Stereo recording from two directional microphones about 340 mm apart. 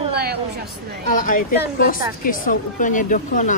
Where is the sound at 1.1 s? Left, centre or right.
Left.